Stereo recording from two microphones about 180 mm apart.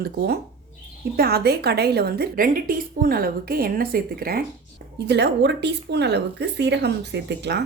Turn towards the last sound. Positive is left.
turn(degrees=-70)  # may be behind; listen again after turning